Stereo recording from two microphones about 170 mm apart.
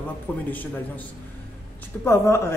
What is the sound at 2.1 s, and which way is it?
Speech, 15° left (ahead or behind).